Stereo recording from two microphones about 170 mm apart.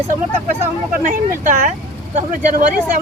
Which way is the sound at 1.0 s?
50° right (ahead or behind).